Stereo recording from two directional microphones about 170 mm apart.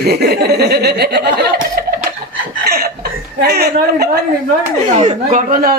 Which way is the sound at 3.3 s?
70° right (ahead or behind).